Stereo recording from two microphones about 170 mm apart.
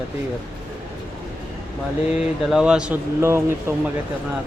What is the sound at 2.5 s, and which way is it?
Speech, 5° right (ahead or behind).